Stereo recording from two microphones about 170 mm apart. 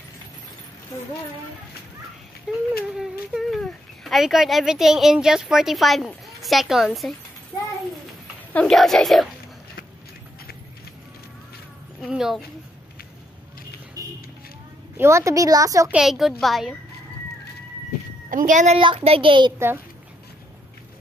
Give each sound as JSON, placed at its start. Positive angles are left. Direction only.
{"t": 2.5, "sound": "a woman's voice", "side_deg": -5}
{"t": 8.5, "sound": "a woman's voice", "side_deg": 5}
{"t": 12.0, "sound": "a woman's voice", "side_deg": 0}
{"t": 14.0, "sound": "music", "side_deg": -20}
{"t": 15.0, "sound": "a woman's voice", "side_deg": -15}
{"t": 15.9, "sound": "a woman's voice", "side_deg": 0}
{"t": 18.3, "sound": "a woman's voice", "side_deg": -50}
{"t": 18.8, "sound": "speech", "side_deg": -30}